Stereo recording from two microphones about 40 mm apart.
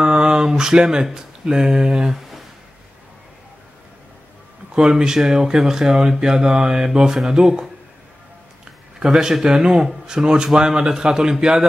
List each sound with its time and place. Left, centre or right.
0.0 s a sound: centre
1.0 s speech: centre
4.7 s speech: centre
9.2 s a man's voice: centre